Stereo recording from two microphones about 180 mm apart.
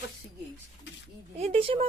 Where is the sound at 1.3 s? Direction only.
35° right (ahead or behind).